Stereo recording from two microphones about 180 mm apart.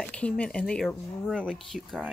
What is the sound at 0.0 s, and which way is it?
Speech, 5° left (ahead or behind).